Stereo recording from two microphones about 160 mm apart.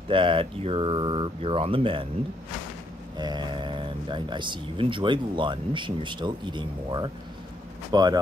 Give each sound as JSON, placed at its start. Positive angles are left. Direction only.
{"t": 0.1, "sound": "speech", "side_deg": -30}
{"t": 3.2, "sound": "speech", "side_deg": -25}